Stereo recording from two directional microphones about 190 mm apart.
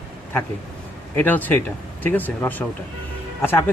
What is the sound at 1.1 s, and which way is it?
Speech, 10° left (ahead or behind).